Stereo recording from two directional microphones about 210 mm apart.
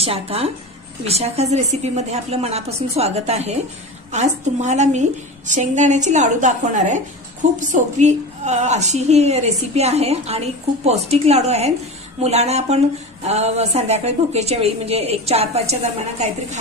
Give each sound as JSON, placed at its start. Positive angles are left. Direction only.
{"t": 0.0, "sound": "speech", "side_deg": -30}